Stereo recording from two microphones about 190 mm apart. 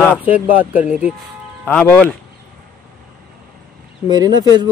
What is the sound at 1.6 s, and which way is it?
Speech, 10° left (ahead or behind).